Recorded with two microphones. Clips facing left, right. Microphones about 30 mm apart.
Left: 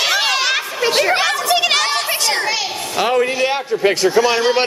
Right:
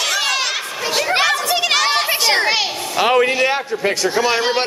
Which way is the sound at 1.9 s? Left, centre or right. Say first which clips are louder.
Right 2 dB; centre.